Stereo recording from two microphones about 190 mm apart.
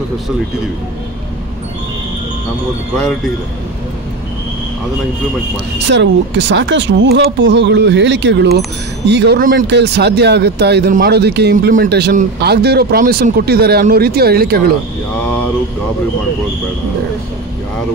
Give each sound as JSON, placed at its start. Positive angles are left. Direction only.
{"t": 5.9, "sound": "speech", "side_deg": -70}